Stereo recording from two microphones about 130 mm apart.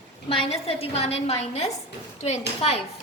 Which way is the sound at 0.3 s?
50° left (ahead or behind).